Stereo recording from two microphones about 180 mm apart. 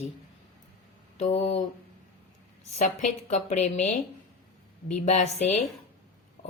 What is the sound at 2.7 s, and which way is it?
A woman's voice, 40° left (ahead or behind).